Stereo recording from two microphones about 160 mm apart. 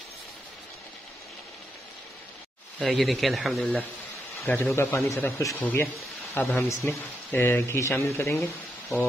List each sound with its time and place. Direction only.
2.8 s speech: centre (ahead or behind)
4.7 s speech: 20° left (ahead or behind)